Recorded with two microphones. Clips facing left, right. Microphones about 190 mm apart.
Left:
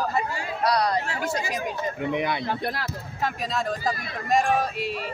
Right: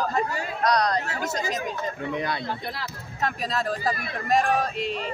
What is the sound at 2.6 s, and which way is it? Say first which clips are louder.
Speech: left 4 dB; 55° left (ahead or behind).